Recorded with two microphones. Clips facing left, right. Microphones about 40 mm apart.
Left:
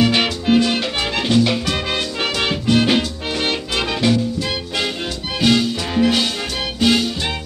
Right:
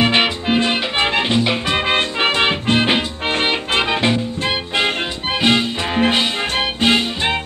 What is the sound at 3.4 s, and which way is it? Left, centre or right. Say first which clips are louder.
Music: right 2 dB; right.